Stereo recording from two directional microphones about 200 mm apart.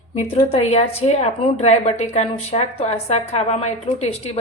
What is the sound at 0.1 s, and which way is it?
A woman's voice, 30° left (ahead or behind).